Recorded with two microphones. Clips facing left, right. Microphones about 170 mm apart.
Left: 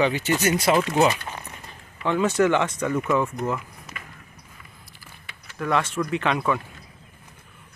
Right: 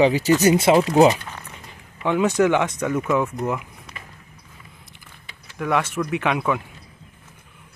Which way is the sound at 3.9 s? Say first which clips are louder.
Even; 30° right (ahead or behind).